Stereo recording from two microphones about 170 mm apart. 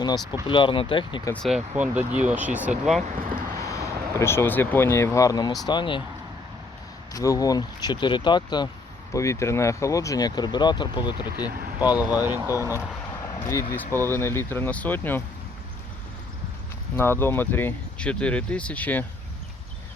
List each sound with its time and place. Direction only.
0.0 s speech: 25° left (ahead or behind)
1.3 s speech: centre (ahead or behind)
3.3 s speech: 15° left (ahead or behind)
7.1 s speech: 20° left (ahead or behind)
11.9 s speech: 10° right (ahead or behind)
13.4 s speech: 20° left (ahead or behind)
17.0 s speech: 15° left (ahead or behind)